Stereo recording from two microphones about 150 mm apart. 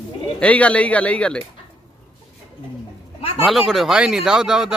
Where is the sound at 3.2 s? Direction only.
40° left (ahead or behind).